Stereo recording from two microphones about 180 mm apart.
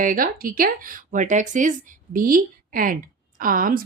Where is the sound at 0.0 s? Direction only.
50° right (ahead or behind).